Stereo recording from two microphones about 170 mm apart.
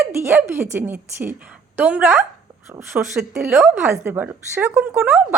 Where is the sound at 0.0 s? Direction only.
15° right (ahead or behind).